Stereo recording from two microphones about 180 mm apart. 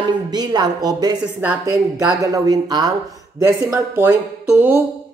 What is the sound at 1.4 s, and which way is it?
Speech, 10° right (ahead or behind).